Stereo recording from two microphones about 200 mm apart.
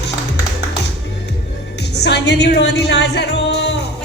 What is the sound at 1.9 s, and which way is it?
Music, 60° left (ahead or behind).